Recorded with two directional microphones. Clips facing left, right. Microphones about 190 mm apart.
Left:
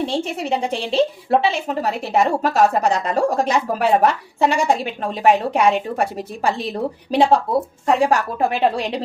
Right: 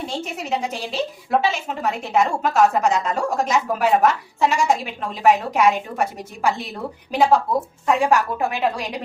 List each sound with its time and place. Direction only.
0.0 s a woman's voice: 30° left (ahead or behind)